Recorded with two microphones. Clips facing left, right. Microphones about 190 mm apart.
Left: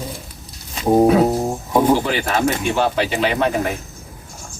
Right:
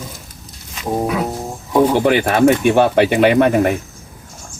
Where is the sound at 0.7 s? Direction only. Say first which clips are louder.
Left 6 dB; 30° left (ahead or behind).